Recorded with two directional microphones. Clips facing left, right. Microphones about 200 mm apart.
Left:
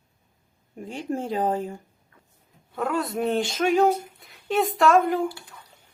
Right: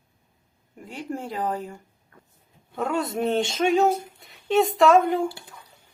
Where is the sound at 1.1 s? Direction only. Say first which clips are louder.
Left 4 dB; 20° left (ahead or behind).